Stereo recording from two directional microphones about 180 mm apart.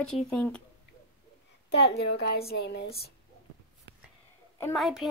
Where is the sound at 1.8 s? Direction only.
70° left (ahead or behind).